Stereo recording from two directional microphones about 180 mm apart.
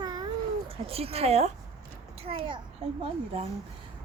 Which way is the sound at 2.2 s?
30° right (ahead or behind).